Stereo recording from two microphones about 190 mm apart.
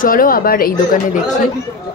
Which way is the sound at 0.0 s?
45° left (ahead or behind).